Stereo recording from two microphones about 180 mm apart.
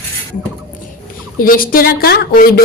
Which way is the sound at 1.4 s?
50° left (ahead or behind).